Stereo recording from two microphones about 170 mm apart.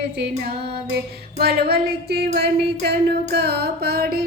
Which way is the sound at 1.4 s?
65° right (ahead or behind).